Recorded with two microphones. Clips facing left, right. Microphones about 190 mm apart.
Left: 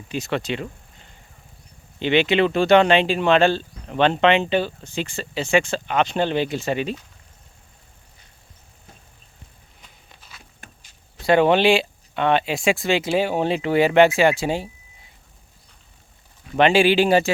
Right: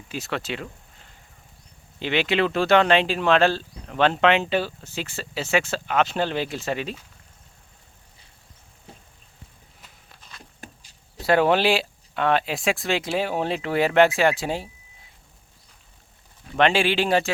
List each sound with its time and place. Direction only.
0.1 s speech: centre (ahead or behind)
8.9 s vehicle: 30° right (ahead or behind)
9.8 s walk: centre (ahead or behind)
10.6 s a sound: 40° right (ahead or behind)
11.2 s speech: 5° right (ahead or behind)
16.6 s speech: 5° left (ahead or behind)